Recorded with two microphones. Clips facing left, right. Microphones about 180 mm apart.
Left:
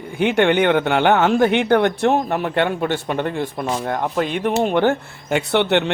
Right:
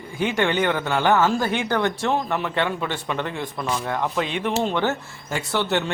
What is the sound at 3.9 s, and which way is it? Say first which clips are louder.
A man's voice: left 4 dB; 50° left (ahead or behind).